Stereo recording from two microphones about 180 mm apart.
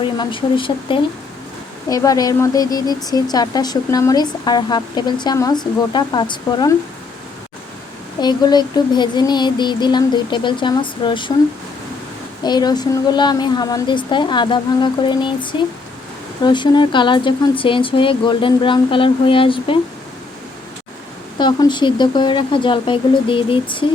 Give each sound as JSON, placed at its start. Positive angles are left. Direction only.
{"t": 0.0, "sound": "speech", "side_deg": 25}
{"t": 8.2, "sound": "speech", "side_deg": 25}
{"t": 12.4, "sound": "speech", "side_deg": 25}
{"t": 21.3, "sound": "speech", "side_deg": 25}